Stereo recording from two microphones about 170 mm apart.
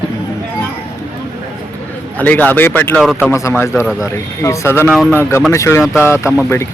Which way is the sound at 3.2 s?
15° left (ahead or behind).